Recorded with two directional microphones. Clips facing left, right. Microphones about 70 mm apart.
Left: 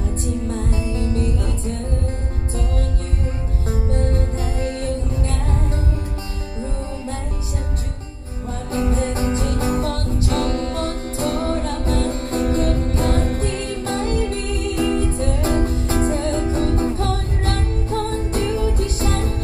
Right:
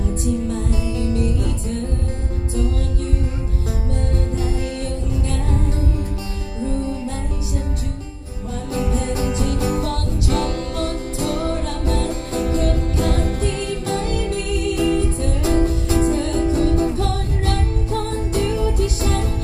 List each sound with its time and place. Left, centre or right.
0.2 s music: left
3.9 s music: left
6.6 s music: left
8.7 s music: left